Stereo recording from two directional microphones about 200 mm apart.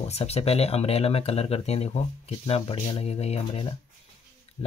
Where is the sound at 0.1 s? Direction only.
30° left (ahead or behind).